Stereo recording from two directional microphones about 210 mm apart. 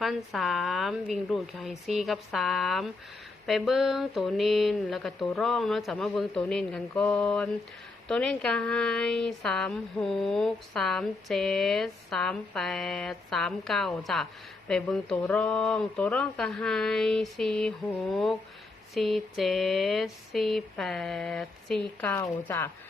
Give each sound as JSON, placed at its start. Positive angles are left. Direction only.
{"t": 0.0, "sound": "a woman's voice", "side_deg": 0}